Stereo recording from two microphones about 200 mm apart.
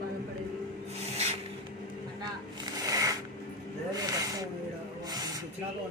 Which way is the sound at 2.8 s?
20° right (ahead or behind).